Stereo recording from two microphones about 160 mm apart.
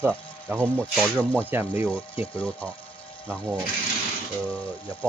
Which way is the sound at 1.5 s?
10° right (ahead or behind).